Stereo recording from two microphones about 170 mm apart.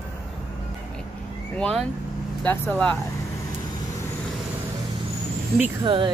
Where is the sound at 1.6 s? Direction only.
5° left (ahead or behind).